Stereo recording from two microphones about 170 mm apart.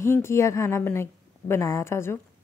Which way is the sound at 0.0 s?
15° left (ahead or behind).